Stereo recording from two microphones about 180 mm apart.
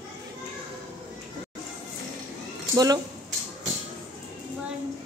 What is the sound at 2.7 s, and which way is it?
Speech, 20° right (ahead or behind).